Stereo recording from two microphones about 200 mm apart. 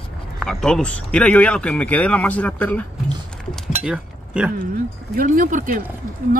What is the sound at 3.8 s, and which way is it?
Speech, 5° right (ahead or behind).